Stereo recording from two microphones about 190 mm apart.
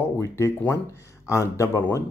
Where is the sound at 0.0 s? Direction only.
15° left (ahead or behind).